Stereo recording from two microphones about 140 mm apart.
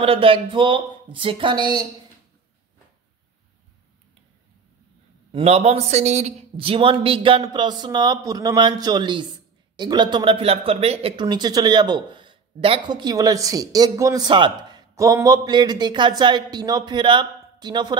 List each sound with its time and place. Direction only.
0.0 s speech: 40° right (ahead or behind)
5.3 s a man's voice: 45° right (ahead or behind); by 17.9 s 30° right (ahead or behind)